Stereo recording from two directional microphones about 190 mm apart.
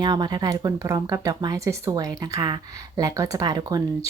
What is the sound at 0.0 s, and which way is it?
Speech, 20° right (ahead or behind).